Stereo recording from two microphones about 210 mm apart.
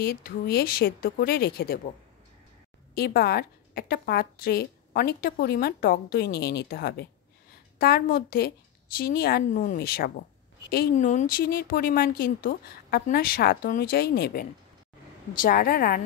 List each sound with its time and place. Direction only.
0.0 s a woman's voice: 45° left (ahead or behind)
2.9 s a woman's voice: 45° left (ahead or behind)